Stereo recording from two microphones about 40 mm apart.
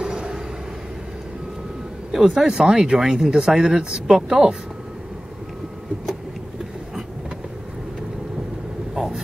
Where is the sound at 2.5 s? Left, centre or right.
Centre.